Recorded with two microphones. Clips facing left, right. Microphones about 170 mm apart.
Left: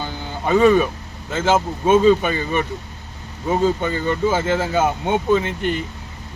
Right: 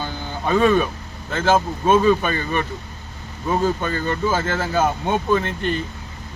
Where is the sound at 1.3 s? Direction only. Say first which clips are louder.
Even; 15° left (ahead or behind).